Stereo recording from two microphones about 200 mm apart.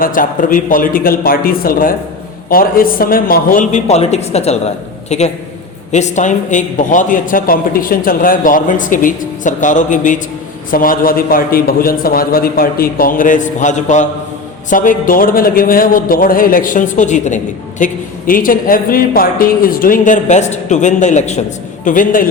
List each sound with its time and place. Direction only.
0.0 s a man's voice: 45° left (ahead or behind)